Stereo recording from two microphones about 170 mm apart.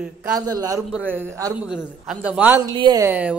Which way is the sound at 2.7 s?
25° right (ahead or behind).